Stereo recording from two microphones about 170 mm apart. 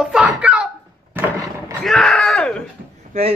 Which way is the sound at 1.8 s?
Centre (ahead or behind).